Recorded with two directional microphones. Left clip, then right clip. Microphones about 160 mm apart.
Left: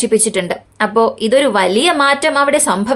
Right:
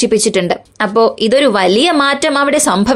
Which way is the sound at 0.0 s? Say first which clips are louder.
Right 3 dB; 35° right (ahead or behind).